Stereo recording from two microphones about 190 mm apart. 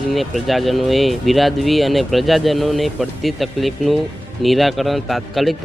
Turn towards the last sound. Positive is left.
turn(degrees=0)  # may be behind; listen again after turning